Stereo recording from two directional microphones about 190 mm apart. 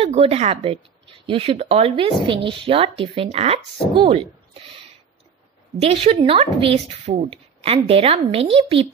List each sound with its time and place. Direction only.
0.0 s speech: 30° right (ahead or behind)
5.8 s speech: 30° right (ahead or behind)